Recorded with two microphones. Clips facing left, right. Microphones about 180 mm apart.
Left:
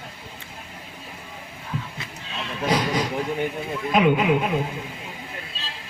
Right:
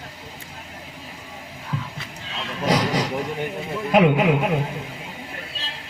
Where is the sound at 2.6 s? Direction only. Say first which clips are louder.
Right 2 dB; 80° right.